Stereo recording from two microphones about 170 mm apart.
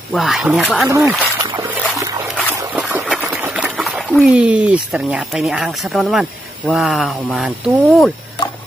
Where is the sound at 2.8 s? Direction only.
5° right (ahead or behind).